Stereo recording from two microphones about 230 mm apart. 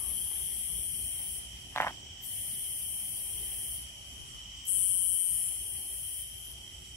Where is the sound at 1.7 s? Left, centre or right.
Centre.